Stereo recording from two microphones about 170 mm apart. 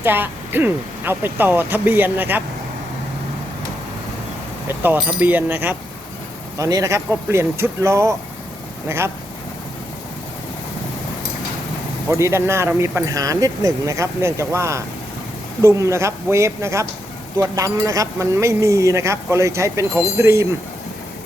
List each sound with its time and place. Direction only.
0.0 s speech: 10° right (ahead or behind)
4.7 s speech: 10° right (ahead or behind)
12.0 s speech: 15° right (ahead or behind)